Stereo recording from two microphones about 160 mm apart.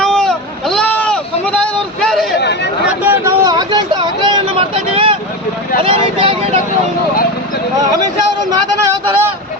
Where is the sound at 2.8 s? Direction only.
10° right (ahead or behind).